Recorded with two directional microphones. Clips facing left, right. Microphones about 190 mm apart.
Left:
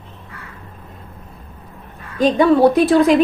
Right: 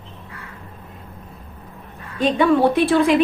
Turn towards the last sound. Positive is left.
turn(degrees=40)  # may be behind; listen again after turning